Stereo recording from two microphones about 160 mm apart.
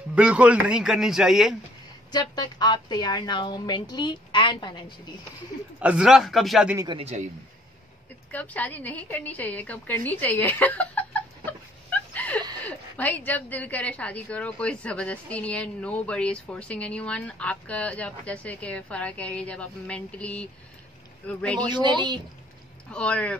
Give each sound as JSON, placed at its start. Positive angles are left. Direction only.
{"t": 0.1, "sound": "a man's voice", "side_deg": -5}
{"t": 2.0, "sound": "a woman's voice", "side_deg": 25}
{"t": 5.8, "sound": "a man's voice", "side_deg": -5}
{"t": 6.8, "sound": "a man's voice", "side_deg": -30}
{"t": 8.3, "sound": "a woman's voice", "side_deg": 10}
{"t": 11.9, "sound": "a sound", "side_deg": 10}
{"t": 12.6, "sound": "a woman's voice", "side_deg": 10}
{"t": 21.5, "sound": "a man's voice", "side_deg": -25}
{"t": 22.8, "sound": "a woman's voice", "side_deg": 5}